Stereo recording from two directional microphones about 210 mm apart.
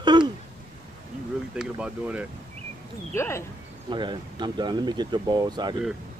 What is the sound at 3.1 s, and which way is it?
Speech, 15° left (ahead or behind).